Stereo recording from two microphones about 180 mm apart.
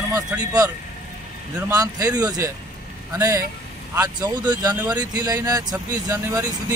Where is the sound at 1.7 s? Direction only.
20° right (ahead or behind).